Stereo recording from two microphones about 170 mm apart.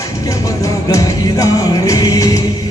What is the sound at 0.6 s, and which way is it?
Music, 20° left (ahead or behind).